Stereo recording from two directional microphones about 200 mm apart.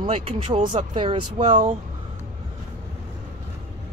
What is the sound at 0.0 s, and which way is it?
Speech, 25° right (ahead or behind).